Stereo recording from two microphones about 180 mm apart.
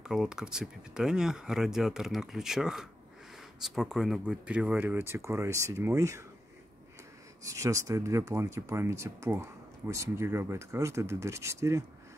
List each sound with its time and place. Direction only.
0.0 s speech: 5° right (ahead or behind)
7.4 s speech: 15° right (ahead or behind)